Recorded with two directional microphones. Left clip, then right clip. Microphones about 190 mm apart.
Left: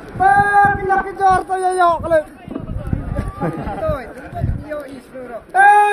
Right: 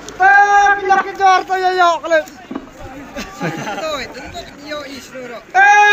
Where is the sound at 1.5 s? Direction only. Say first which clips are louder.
Right 2 dB; 40° left (ahead or behind).